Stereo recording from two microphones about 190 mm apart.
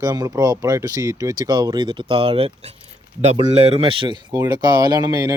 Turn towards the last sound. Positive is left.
turn(degrees=-20)  # may be behind; listen again after turning